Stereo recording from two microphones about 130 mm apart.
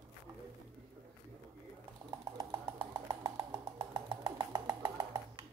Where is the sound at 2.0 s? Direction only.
30° right (ahead or behind).